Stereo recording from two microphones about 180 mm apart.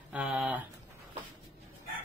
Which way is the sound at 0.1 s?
10° right (ahead or behind).